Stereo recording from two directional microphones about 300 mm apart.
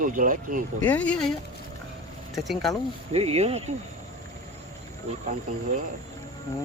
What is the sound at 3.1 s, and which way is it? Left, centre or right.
Speech, right.